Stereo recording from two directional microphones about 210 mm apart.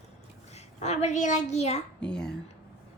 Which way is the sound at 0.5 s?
30° left (ahead or behind).